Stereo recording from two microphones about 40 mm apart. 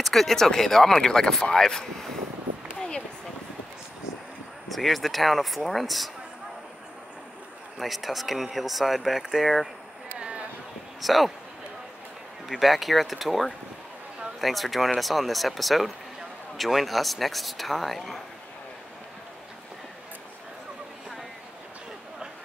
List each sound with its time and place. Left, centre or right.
0.0 s speech: centre
4.6 s speech: centre
7.8 s speech: centre
10.1 s a sound: right
11.0 s speech: centre
12.4 s speech: centre